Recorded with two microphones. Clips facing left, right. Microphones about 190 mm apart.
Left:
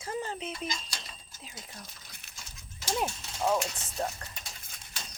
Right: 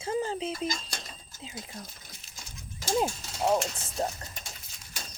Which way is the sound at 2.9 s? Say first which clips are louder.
Right 5 dB; 30° right (ahead or behind).